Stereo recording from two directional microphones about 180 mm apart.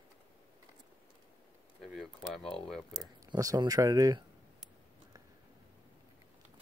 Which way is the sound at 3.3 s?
20° right (ahead or behind).